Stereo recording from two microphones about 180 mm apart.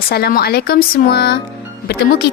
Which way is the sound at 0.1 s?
60° left (ahead or behind).